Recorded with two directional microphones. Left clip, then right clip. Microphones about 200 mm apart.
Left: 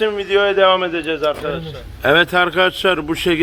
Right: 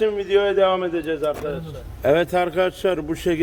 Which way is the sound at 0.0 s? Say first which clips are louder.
Left 3 dB; centre (ahead or behind).